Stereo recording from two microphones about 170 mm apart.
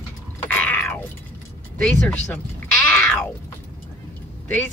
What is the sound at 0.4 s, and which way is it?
Cat, 10° left (ahead or behind).